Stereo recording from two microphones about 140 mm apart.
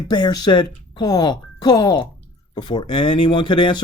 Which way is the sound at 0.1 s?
30° left (ahead or behind).